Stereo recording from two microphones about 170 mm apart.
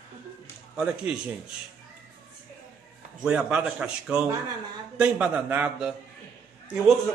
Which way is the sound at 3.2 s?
5° right (ahead or behind).